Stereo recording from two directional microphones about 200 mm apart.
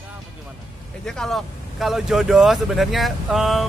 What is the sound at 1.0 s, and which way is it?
Speech, centre (ahead or behind).